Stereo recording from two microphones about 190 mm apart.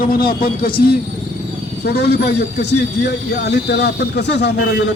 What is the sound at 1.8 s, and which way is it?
Speech, 60° left (ahead or behind).